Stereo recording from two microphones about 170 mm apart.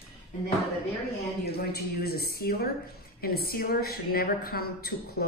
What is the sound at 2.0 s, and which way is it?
Speech, 65° left (ahead or behind).